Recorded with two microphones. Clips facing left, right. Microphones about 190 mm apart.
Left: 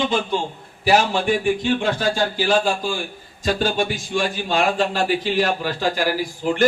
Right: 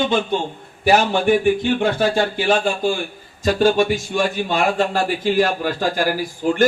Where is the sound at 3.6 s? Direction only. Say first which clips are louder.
Right 6 dB; 50° right (ahead or behind).